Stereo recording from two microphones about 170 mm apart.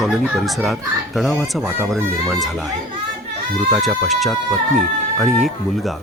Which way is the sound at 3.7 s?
Centre (ahead or behind).